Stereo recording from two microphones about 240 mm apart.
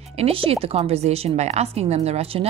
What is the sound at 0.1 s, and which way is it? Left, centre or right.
A woman's voice, right.